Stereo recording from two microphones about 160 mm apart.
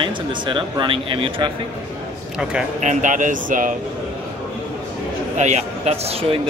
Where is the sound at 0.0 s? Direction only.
30° right (ahead or behind).